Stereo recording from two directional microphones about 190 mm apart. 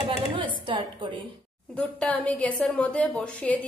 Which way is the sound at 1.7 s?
5° left (ahead or behind).